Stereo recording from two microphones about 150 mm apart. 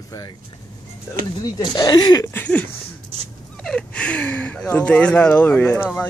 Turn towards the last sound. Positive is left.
turn(degrees=10)  # may be behind; listen again after turning